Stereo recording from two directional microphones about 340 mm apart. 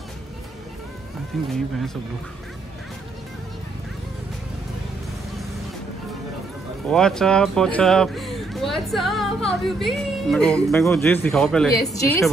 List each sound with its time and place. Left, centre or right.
1.3 s speech: centre
6.9 s speech: centre